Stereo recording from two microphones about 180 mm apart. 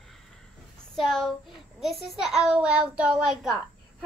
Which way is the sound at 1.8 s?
Centre (ahead or behind).